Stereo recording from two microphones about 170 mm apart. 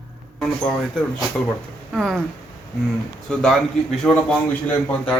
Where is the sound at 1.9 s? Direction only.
Centre (ahead or behind).